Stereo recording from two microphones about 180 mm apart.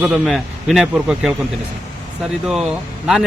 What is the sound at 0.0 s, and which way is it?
Speech, centre (ahead or behind).